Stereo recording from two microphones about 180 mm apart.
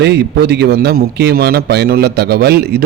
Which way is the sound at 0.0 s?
65° right (ahead or behind).